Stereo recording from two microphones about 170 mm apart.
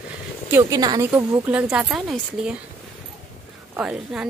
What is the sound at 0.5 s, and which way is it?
A woman's voice, 20° right (ahead or behind).